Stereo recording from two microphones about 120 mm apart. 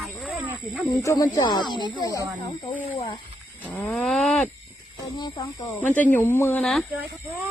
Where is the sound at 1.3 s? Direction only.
35° left (ahead or behind).